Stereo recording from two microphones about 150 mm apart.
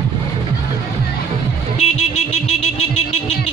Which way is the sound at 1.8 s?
45° left (ahead or behind).